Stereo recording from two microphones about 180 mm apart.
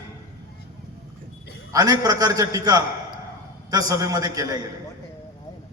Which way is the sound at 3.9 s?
20° right (ahead or behind).